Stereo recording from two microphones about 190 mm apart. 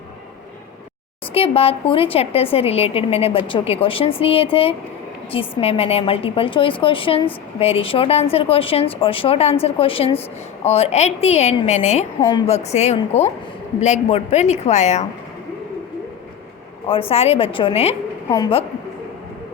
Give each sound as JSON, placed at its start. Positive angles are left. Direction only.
{"t": 1.3, "sound": "speech", "side_deg": 30}
{"t": 16.9, "sound": "speech", "side_deg": 30}